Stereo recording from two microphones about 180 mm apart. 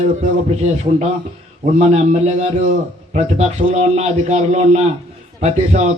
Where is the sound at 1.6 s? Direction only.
40° right (ahead or behind).